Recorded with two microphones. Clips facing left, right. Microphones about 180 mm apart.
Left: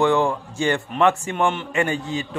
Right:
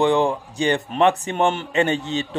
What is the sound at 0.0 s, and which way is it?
A man's voice, 20° right (ahead or behind).